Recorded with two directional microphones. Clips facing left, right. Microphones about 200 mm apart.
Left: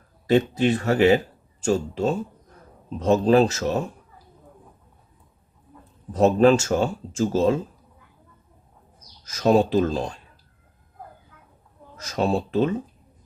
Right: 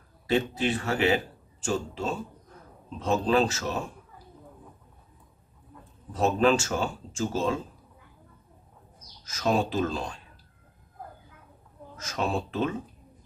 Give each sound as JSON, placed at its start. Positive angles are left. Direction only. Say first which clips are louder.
{"t": 0.3, "sound": "speech", "louder": "left 7 dB", "side_deg": 40}
{"t": 6.1, "sound": "speech", "louder": "left 6 dB", "side_deg": 40}
{"t": 9.2, "sound": "speech", "louder": "left 7 dB", "side_deg": 40}
{"t": 12.0, "sound": "speech", "louder": "left 6 dB", "side_deg": 35}